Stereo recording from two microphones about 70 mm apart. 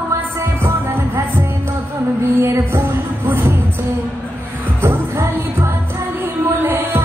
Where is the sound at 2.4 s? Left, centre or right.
Right.